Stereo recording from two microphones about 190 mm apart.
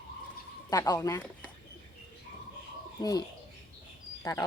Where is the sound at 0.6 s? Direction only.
20° left (ahead or behind).